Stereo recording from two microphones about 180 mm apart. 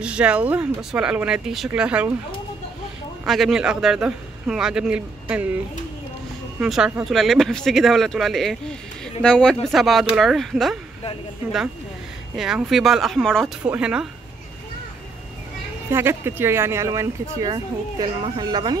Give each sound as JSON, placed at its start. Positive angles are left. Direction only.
{"t": 0.0, "sound": "speech", "side_deg": -5}
{"t": 3.3, "sound": "speech", "side_deg": 0}
{"t": 6.6, "sound": "speech", "side_deg": -5}
{"t": 12.4, "sound": "speech", "side_deg": 0}
{"t": 15.9, "sound": "speech", "side_deg": -15}